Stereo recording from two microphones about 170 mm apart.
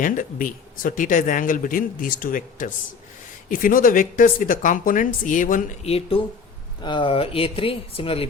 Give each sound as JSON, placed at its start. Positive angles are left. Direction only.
{"t": 0.0, "sound": "speech", "side_deg": 50}
{"t": 5.8, "sound": "speech", "side_deg": 35}